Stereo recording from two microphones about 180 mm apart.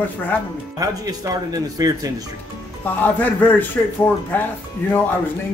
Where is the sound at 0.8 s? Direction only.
20° right (ahead or behind).